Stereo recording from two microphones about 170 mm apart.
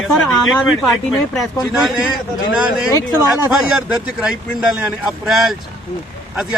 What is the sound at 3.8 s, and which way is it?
Speech, 5° right (ahead or behind).